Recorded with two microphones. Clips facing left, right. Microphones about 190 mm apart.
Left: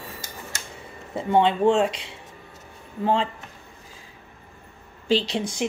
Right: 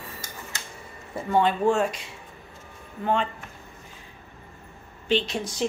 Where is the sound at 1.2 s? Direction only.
20° left (ahead or behind).